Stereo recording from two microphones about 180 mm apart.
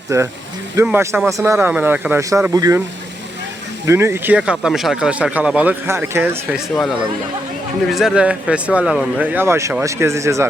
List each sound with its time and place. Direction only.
0.1 s speech: 15° right (ahead or behind)
3.8 s speech: 15° right (ahead or behind)
7.9 s speech: centre (ahead or behind)